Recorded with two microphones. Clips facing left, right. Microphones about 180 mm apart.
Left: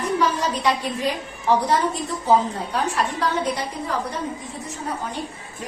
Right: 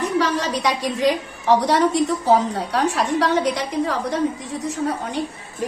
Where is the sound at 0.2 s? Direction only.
90° right.